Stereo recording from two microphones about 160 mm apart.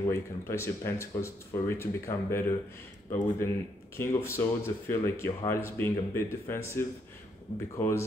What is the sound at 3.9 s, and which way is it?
Speech, 15° left (ahead or behind).